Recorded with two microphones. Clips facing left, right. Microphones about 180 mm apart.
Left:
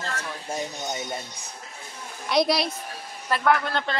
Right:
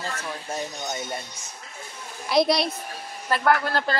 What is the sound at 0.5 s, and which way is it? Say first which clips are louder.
Speech: left 1 dB; 15° left (ahead or behind).